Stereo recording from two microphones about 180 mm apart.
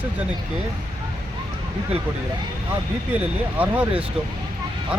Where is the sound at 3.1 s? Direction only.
10° right (ahead or behind).